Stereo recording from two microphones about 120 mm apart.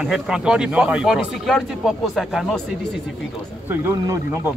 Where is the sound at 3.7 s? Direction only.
20° right (ahead or behind).